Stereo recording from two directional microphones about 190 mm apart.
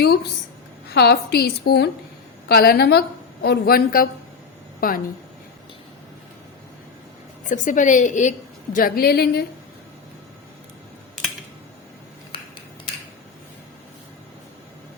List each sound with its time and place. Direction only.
0.9 s a woman's voice: 60° left (ahead or behind)
7.5 s a woman's voice: 45° left (ahead or behind)